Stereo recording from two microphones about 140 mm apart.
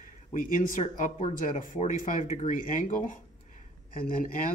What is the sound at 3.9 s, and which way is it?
Speech, 85° left.